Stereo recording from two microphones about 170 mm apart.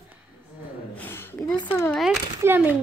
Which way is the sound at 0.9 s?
10° left (ahead or behind).